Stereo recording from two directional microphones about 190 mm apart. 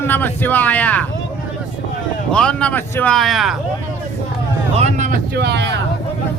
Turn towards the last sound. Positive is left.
turn(degrees=-65)  # may be behind; listen again after turning